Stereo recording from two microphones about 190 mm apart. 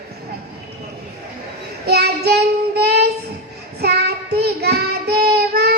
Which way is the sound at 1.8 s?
60° right (ahead or behind).